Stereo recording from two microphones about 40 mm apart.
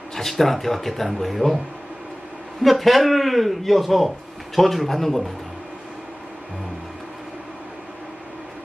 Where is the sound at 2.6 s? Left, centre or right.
Centre.